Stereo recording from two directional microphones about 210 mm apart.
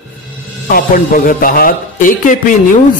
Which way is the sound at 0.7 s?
40° left (ahead or behind).